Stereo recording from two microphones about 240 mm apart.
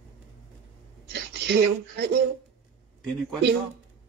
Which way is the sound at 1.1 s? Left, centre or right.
Right.